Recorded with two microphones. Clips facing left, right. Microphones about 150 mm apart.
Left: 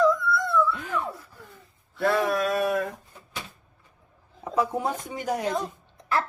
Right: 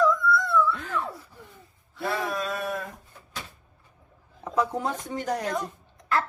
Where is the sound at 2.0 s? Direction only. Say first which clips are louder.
Left 6 dB; 65° left (ahead or behind).